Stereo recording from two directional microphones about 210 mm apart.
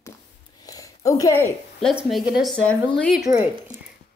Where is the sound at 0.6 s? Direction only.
15° left (ahead or behind).